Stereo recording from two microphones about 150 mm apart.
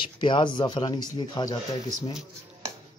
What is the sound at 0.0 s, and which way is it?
Speech, 30° left (ahead or behind).